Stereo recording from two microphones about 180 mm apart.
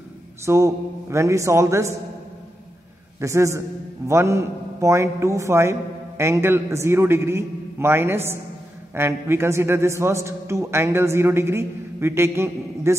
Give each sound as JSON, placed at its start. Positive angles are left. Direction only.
{"t": 0.5, "sound": "a man's voice", "side_deg": -15}
{"t": 3.2, "sound": "a man's voice", "side_deg": -15}